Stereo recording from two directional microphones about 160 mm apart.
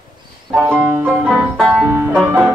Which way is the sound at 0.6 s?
15° right (ahead or behind).